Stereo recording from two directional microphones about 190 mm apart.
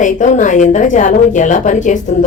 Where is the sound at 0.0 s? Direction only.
40° left (ahead or behind).